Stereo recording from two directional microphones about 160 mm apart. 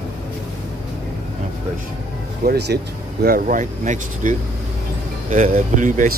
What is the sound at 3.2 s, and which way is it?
Speech, 65° right (ahead or behind).